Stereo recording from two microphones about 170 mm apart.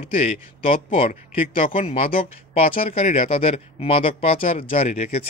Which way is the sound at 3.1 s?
35° left (ahead or behind).